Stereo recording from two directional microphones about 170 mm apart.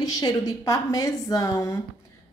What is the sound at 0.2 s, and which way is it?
A woman's voice, 20° left (ahead or behind).